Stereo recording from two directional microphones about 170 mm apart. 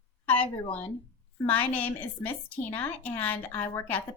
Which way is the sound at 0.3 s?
10° left (ahead or behind).